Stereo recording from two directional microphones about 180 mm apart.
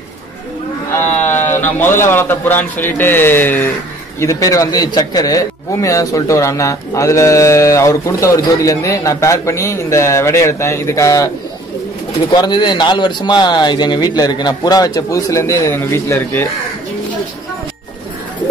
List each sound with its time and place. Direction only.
0.9 s a man's voice: 15° left (ahead or behind)
12.3 s speech: 25° left (ahead or behind)